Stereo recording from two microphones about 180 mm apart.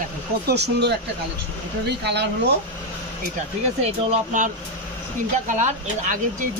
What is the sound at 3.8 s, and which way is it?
Speech, 35° right (ahead or behind).